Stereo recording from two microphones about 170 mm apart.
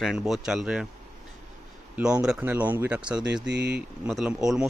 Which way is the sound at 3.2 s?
90° right.